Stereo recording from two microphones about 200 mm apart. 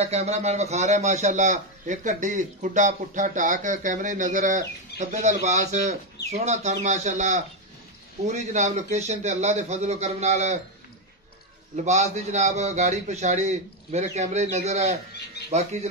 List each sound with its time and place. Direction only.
0.0 s a man's voice: 35° right (ahead or behind)
11.7 s a man's voice: 35° right (ahead or behind)